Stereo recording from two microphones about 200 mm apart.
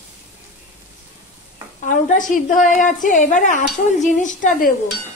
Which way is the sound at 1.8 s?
40° left (ahead or behind).